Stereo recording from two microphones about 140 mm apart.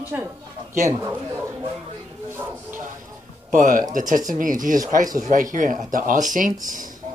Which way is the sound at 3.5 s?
75° right (ahead or behind).